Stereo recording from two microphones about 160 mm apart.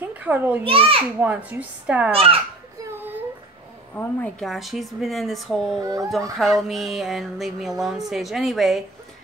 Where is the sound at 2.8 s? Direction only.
10° right (ahead or behind).